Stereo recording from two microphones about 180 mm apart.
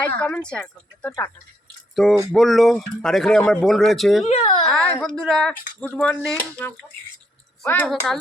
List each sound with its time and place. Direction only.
0.2 s speech: 5° left (ahead or behind)
4.3 s speech: 35° left (ahead or behind)
4.6 s speech: 5° left (ahead or behind)